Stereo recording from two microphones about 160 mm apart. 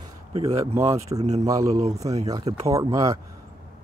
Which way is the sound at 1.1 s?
45° right (ahead or behind).